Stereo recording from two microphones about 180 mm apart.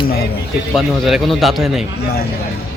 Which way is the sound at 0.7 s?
Centre (ahead or behind).